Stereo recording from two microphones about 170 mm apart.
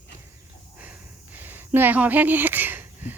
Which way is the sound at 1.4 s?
10° right (ahead or behind).